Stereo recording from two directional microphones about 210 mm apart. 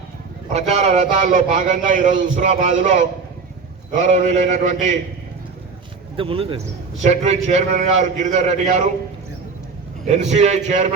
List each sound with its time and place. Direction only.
0.5 s a man's voice: 30° right (ahead or behind)
6.1 s a man's voice: 25° right (ahead or behind)
10.1 s a man's voice: 35° right (ahead or behind)